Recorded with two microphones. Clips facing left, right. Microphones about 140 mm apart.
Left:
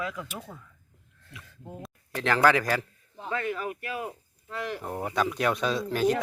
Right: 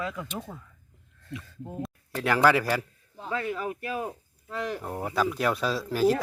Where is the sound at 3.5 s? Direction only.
25° right (ahead or behind).